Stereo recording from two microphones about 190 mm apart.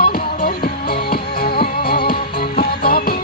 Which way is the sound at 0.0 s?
50° left (ahead or behind).